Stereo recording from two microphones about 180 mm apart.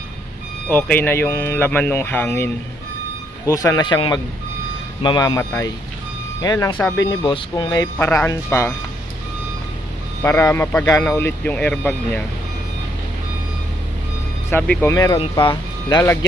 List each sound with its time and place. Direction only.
0.7 s speech: 10° left (ahead or behind)
3.5 s speech: 20° left (ahead or behind)
10.2 s speech: 15° left (ahead or behind)
14.5 s speech: 10° left (ahead or behind)
15.1 s speech: 25° left (ahead or behind)